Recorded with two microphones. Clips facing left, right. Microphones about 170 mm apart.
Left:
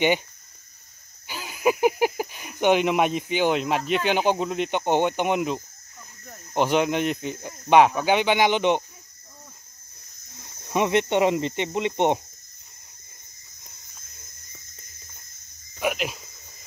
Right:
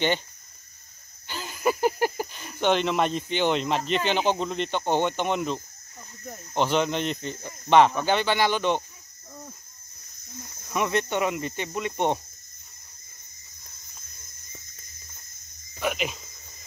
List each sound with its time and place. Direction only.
1.2 s speech: 10° left (ahead or behind)
10.7 s speech: 20° left (ahead or behind)
15.8 s cricket: 5° left (ahead or behind)